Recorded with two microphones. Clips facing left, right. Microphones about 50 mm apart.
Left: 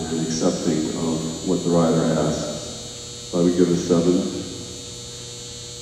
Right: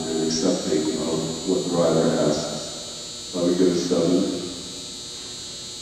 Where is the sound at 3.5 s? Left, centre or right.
Left.